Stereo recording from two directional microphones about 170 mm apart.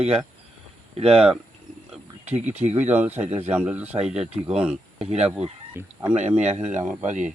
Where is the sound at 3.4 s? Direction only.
10° right (ahead or behind).